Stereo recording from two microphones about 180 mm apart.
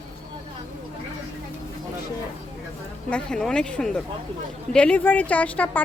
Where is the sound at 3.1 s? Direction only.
5° left (ahead or behind).